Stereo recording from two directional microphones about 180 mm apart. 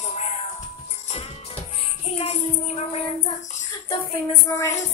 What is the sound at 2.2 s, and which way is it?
Child singing, 35° left (ahead or behind).